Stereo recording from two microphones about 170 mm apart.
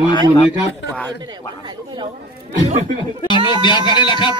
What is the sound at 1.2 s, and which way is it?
Chatter, 25° right (ahead or behind).